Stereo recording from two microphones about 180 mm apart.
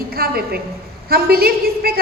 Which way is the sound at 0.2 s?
60° right (ahead or behind).